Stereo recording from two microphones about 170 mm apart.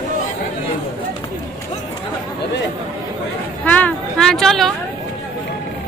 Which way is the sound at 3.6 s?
10° left (ahead or behind).